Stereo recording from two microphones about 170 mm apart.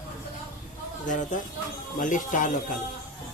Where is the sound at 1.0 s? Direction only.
50° left (ahead or behind).